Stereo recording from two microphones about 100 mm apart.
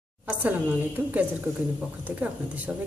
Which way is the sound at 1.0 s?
15° right (ahead or behind).